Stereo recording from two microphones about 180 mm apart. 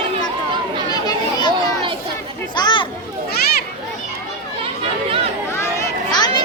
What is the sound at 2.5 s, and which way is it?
Children playing, 25° left (ahead or behind).